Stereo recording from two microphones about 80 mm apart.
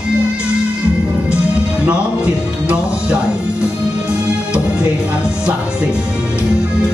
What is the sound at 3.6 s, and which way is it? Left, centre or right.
Music, centre.